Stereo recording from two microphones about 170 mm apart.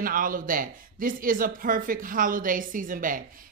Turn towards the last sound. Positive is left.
turn(degrees=-55)  # may be behind; listen again after turning